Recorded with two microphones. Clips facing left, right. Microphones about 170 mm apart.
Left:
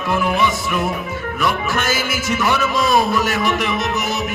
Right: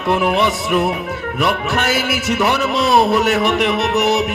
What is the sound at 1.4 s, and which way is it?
A man's voice, 65° right (ahead or behind).